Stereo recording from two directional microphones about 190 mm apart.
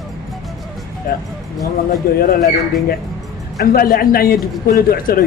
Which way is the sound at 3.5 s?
50° left (ahead or behind).